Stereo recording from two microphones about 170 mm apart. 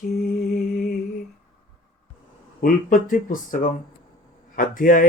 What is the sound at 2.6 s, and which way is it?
Speech, 55° left (ahead or behind).